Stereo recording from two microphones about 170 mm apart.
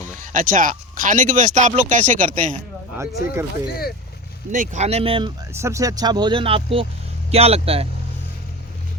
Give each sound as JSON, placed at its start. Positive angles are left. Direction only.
{"t": 0.3, "sound": "speech", "side_deg": -55}
{"t": 3.0, "sound": "speech", "side_deg": -15}
{"t": 4.5, "sound": "speech", "side_deg": -50}
{"t": 5.5, "sound": "speech", "side_deg": -15}